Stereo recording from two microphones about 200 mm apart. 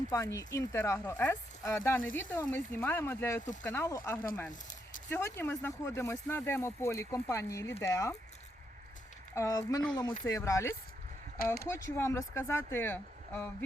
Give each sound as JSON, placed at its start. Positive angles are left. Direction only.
{"t": 0.1, "sound": "speech", "side_deg": 15}
{"t": 9.3, "sound": "speech", "side_deg": 15}